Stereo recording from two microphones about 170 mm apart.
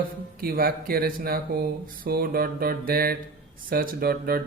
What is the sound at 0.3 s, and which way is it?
Speech, 60° right (ahead or behind).